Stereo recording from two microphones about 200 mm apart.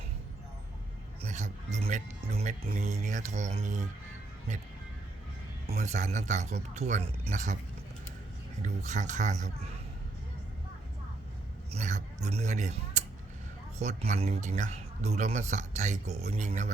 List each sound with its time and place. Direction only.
1.2 s speech: 35° right (ahead or behind)
5.6 s speech: 35° right (ahead or behind)
8.6 s speech: 35° right (ahead or behind)
11.7 s speech: 35° right (ahead or behind)